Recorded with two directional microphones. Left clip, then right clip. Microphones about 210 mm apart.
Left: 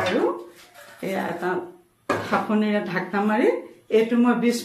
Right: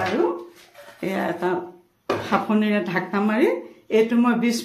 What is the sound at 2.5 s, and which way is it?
A woman's voice, 50° right (ahead or behind).